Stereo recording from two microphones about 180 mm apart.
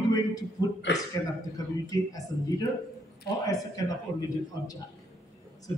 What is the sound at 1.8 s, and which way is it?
Speech, 20° left (ahead or behind).